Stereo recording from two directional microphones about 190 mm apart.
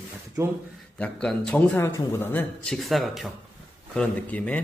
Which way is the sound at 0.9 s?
5° left (ahead or behind).